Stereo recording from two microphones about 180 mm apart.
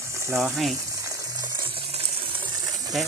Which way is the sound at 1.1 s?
20° right (ahead or behind).